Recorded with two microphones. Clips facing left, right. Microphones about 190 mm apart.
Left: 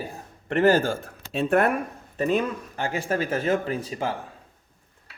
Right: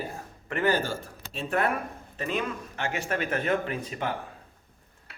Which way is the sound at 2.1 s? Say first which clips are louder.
Left 7 dB; 40° left (ahead or behind).